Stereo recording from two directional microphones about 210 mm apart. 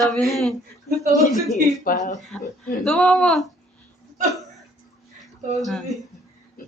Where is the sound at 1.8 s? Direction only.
40° left (ahead or behind).